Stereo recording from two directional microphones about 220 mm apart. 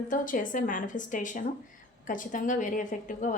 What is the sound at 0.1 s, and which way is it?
Speech, 35° left (ahead or behind).